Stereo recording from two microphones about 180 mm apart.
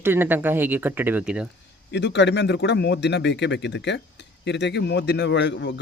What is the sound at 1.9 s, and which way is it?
A man's voice, 75° left (ahead or behind).